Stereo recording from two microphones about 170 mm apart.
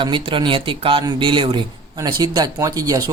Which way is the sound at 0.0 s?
30° right (ahead or behind).